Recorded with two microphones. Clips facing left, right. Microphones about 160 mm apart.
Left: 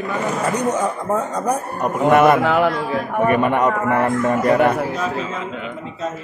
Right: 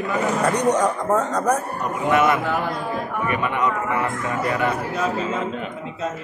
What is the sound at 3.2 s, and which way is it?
A man's voice, 50° left (ahead or behind).